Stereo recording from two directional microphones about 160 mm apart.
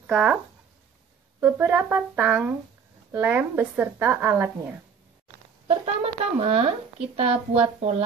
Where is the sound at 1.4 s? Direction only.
15° right (ahead or behind).